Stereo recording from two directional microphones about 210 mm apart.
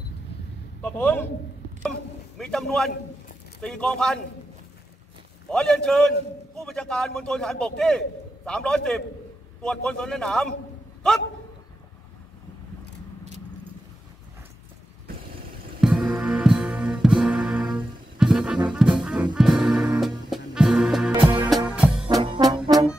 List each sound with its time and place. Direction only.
0.8 s a man's voice: 10° left (ahead or behind)
2.3 s a man's voice: centre (ahead or behind)
5.5 s a man's voice: 5° left (ahead or behind)
15.8 s music: 5° right (ahead or behind)
22.0 s brass instrument: 25° right (ahead or behind)